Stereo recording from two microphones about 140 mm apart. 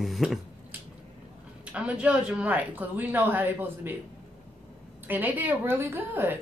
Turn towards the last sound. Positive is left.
turn(degrees=-15)  # may be behind; listen again after turning